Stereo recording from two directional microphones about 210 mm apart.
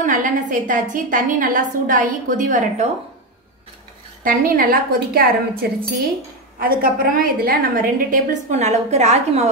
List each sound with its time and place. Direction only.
0.0 s a woman's voice: 40° right (ahead or behind)
4.2 s a woman's voice: 40° right (ahead or behind)